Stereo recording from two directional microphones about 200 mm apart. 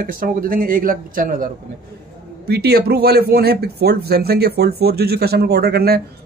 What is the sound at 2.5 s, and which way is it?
A man's voice, 55° right (ahead or behind).